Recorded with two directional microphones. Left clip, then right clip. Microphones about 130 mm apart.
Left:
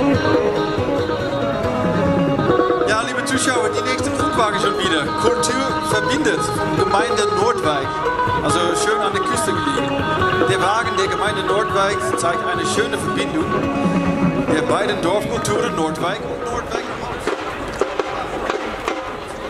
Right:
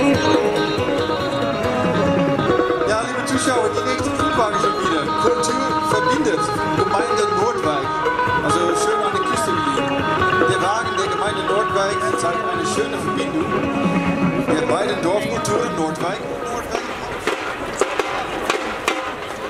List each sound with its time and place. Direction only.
0.0 s music: 15° right (ahead or behind)
2.9 s music: 40° left (ahead or behind)
9.8 s music: 5° left (ahead or behind)
10.5 s music: 35° left (ahead or behind)
14.5 s music: 30° left (ahead or behind)